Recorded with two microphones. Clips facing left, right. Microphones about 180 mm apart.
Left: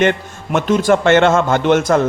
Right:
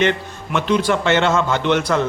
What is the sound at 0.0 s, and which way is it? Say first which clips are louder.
A man's voice: left 3 dB; 50° left (ahead or behind).